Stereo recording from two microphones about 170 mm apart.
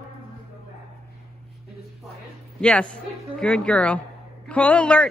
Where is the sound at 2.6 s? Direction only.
5° left (ahead or behind).